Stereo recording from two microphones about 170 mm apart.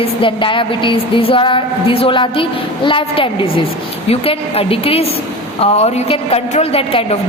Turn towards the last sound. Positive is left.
turn(degrees=35)  # may be behind; listen again after turning